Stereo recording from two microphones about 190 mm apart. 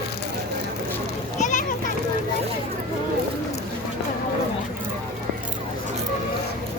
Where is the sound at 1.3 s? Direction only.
40° left (ahead or behind).